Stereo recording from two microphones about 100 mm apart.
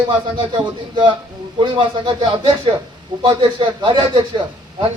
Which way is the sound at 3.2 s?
55° right (ahead or behind).